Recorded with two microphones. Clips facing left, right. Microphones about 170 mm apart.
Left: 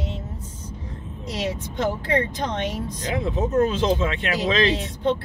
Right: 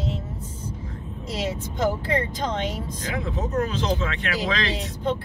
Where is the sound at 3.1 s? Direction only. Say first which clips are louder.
Left 4 dB; 20° left (ahead or behind).